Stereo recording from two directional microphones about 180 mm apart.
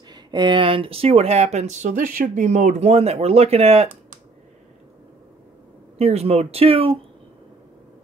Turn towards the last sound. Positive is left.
turn(degrees=-30)  # may be behind; listen again after turning